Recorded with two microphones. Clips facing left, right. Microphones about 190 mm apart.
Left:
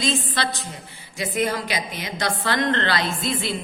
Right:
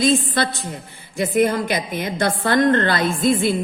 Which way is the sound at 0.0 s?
55° right (ahead or behind).